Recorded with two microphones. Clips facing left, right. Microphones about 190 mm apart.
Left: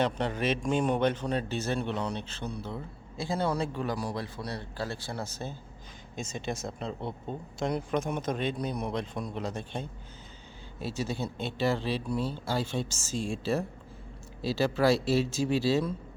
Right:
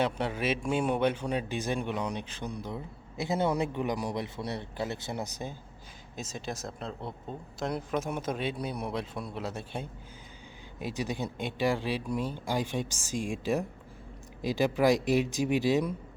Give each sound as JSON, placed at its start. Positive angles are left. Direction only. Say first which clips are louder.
{"t": 0.0, "sound": "a man's voice", "louder": "left 1 dB", "side_deg": -5}
{"t": 6.1, "sound": "a man's voice", "louder": "left 3 dB", "side_deg": 0}